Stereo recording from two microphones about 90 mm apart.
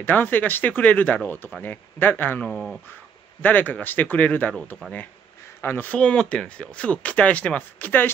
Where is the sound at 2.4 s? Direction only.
5° left (ahead or behind).